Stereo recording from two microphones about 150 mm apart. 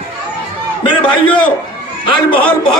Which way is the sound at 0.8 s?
30° left (ahead or behind).